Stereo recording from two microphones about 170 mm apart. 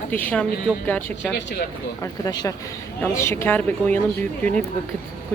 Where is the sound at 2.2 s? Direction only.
20° left (ahead or behind).